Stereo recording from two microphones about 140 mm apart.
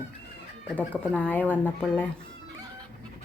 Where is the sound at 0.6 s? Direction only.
10° left (ahead or behind).